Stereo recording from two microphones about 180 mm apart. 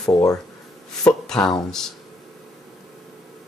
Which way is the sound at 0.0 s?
20° left (ahead or behind).